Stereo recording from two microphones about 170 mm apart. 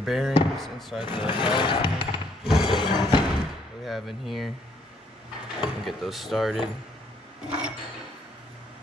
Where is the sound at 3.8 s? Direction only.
Centre (ahead or behind).